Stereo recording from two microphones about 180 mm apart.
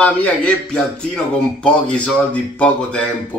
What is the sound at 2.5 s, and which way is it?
Speech, 5° left (ahead or behind).